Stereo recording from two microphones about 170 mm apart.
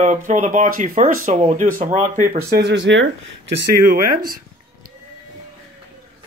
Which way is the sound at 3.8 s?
60° right (ahead or behind).